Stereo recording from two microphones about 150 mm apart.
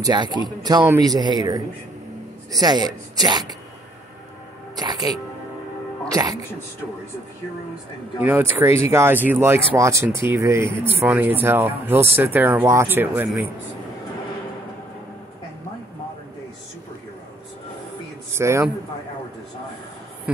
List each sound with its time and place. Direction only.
0.0 s speech: 30° right (ahead or behind)
2.6 s speech: 25° right (ahead or behind)
5.1 s speech: 5° left (ahead or behind)
6.0 s speech: 25° right (ahead or behind)
8.2 s speech: 10° right (ahead or behind)
18.3 s a man's voice: 20° right (ahead or behind)